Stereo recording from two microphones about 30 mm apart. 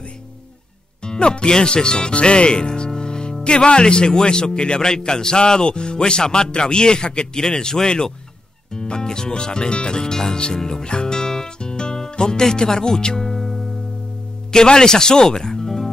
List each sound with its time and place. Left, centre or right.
1.0 s a man's voice: left
2.1 s music: left
3.4 s a man's voice: left
10.9 s speech: left
11.1 s music: centre
13.4 s music: centre
14.5 s speech: left